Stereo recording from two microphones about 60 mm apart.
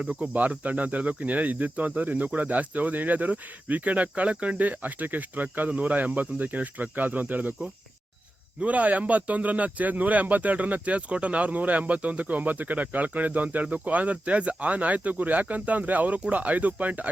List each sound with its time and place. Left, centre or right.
0.0 s speech: right
8.6 s speech: right